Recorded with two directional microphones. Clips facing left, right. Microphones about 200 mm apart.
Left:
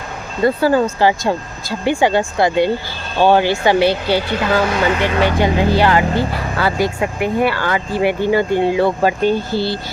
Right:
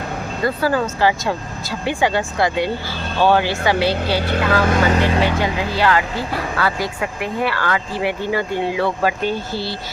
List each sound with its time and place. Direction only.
0.4 s speech: 25° left (ahead or behind)
4.6 s speech: 45° right (ahead or behind)
5.4 s speech: 30° left (ahead or behind)
9.2 s speech: centre (ahead or behind)